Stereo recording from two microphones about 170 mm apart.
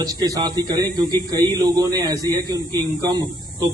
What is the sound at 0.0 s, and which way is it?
A man's voice, 20° right (ahead or behind).